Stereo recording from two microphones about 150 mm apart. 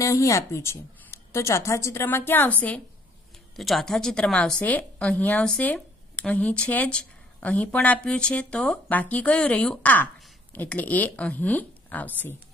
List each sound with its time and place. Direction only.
0.0 s a woman's voice: 20° left (ahead or behind)